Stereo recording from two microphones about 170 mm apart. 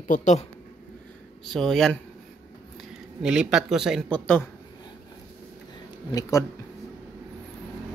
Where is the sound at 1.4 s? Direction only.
Centre (ahead or behind).